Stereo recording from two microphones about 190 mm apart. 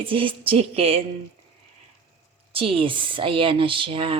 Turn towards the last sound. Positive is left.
turn(degrees=-30)  # may be behind; listen again after turning